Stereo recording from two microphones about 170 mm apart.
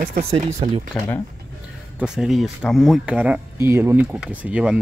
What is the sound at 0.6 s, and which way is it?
Speech, 35° right (ahead or behind).